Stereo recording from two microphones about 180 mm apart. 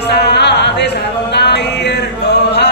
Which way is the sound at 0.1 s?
70° left (ahead or behind).